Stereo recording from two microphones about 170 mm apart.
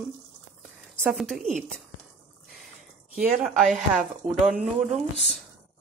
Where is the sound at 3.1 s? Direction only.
Centre (ahead or behind).